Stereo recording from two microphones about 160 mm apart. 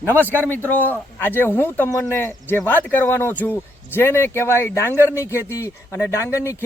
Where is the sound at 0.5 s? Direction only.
10° left (ahead or behind).